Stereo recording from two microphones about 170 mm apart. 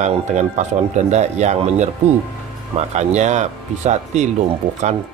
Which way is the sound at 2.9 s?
45° right (ahead or behind).